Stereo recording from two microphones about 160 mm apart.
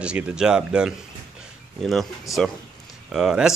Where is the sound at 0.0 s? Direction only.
5° right (ahead or behind).